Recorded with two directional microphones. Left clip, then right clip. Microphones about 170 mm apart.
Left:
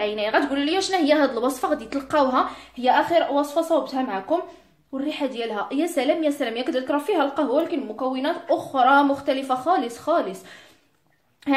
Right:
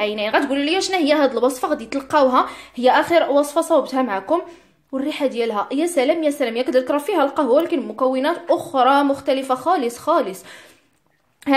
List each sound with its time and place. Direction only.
0.0 s a woman's voice: 40° right (ahead or behind)
2.8 s a woman's voice: 45° right (ahead or behind)
11.5 s a woman's voice: 40° right (ahead or behind)